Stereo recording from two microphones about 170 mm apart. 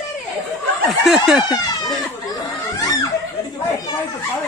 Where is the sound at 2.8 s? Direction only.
20° left (ahead or behind).